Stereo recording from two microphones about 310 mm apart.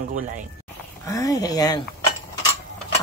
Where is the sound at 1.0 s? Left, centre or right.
Centre.